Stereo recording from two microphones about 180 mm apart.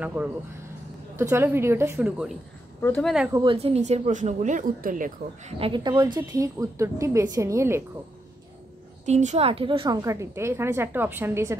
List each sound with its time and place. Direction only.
0.0 s a woman's voice: 10° right (ahead or behind)
2.8 s speech: 5° left (ahead or behind)
3.5 s speech: 35° right (ahead or behind)
5.6 s a woman's voice: 25° right (ahead or behind)
9.0 s a woman's voice: 40° right (ahead or behind); by 11.5 s 15° right (ahead or behind)